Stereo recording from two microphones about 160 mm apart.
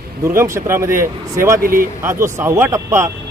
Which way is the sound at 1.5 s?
60° right (ahead or behind).